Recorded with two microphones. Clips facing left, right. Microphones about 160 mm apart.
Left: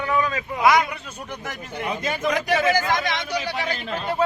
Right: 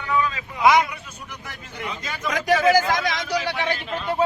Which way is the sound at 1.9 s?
50° left (ahead or behind).